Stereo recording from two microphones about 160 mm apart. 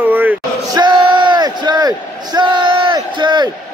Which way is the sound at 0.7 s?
30° right (ahead or behind).